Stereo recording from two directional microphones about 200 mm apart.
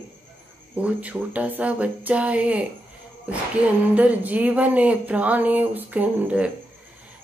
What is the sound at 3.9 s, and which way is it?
Speech, 5° right (ahead or behind).